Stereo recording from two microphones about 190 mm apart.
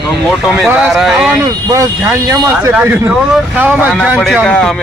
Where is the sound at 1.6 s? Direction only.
15° right (ahead or behind); by 4.7 s 5° left (ahead or behind).